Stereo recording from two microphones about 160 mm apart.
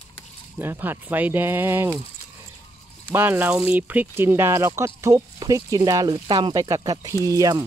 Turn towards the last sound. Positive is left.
turn(degrees=-20)  # may be behind; listen again after turning